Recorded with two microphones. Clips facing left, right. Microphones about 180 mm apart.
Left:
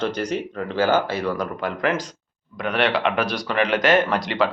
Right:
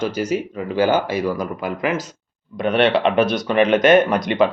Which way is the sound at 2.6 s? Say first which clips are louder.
Right 5 dB; 25° right (ahead or behind).